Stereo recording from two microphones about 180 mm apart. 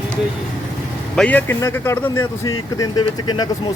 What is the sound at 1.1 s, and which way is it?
Speech, 5° left (ahead or behind).